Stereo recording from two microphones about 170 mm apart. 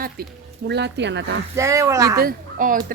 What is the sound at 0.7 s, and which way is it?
Speech, 85° right.